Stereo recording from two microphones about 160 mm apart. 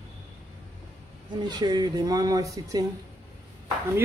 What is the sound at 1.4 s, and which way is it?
Speech, 25° right (ahead or behind).